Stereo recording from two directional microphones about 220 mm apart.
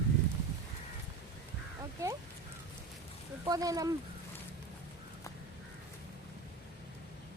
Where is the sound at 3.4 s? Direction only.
15° right (ahead or behind).